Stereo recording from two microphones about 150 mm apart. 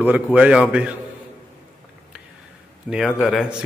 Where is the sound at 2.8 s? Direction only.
5° right (ahead or behind).